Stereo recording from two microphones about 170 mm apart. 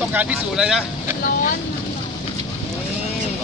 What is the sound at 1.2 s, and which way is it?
Vehicle, 55° left (ahead or behind).